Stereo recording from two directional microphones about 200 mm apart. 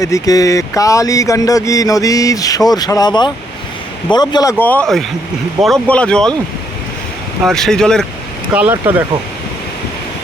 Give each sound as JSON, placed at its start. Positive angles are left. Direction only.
{"t": 0.0, "sound": "speech", "side_deg": 15}
{"t": 4.6, "sound": "speech", "side_deg": 5}
{"t": 7.4, "sound": "speech", "side_deg": 0}
{"t": 8.5, "sound": "speech", "side_deg": -10}